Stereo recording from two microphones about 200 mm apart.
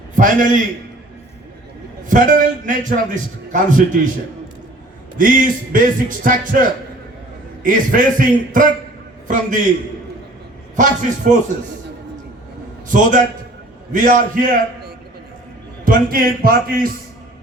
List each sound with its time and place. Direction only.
0.2 s a man's voice: 40° right (ahead or behind)
2.0 s speech: 40° right (ahead or behind)
5.1 s a man's voice: 45° right (ahead or behind)
10.8 s speech: 40° right (ahead or behind)
12.9 s speech: 40° right (ahead or behind)
15.8 s a man's voice: 45° right (ahead or behind)